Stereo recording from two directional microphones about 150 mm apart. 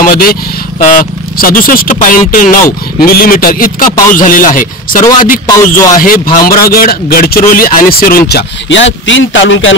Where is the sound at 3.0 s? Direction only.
80° left; by 5.0 s 65° left (ahead or behind).